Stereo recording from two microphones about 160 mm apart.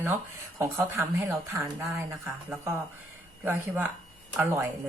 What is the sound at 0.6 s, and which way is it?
Speech, 20° right (ahead or behind).